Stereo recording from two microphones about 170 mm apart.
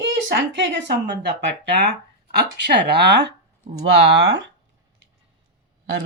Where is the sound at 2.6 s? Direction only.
80° right.